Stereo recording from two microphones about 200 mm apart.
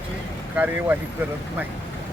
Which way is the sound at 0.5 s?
10° right (ahead or behind).